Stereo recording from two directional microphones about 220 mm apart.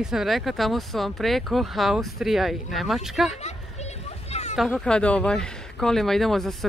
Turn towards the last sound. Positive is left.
turn(degrees=0)  # may be behind; listen again after turning